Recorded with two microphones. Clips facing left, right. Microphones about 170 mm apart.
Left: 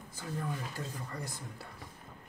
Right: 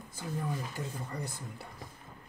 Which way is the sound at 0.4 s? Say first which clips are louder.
Right 2 dB; 20° right (ahead or behind).